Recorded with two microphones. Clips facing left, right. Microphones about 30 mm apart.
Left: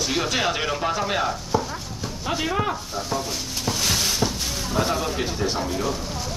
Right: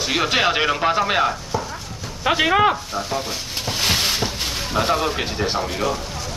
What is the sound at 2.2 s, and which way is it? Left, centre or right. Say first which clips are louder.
Speech: right 8 dB; right.